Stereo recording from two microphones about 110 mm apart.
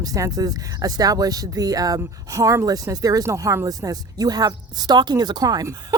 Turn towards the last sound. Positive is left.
turn(degrees=-35)  # may be behind; listen again after turning